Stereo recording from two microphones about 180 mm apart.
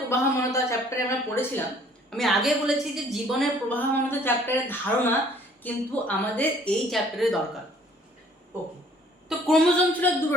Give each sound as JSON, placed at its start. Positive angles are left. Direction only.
{"t": 0.1, "sound": "a woman's voice", "side_deg": 15}
{"t": 2.0, "sound": "a woman's voice", "side_deg": 0}
{"t": 3.7, "sound": "a woman's voice", "side_deg": 10}
{"t": 9.5, "sound": "a woman's voice", "side_deg": 5}